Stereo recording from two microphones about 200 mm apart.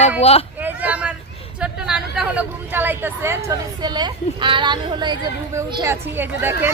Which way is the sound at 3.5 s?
20° right (ahead or behind).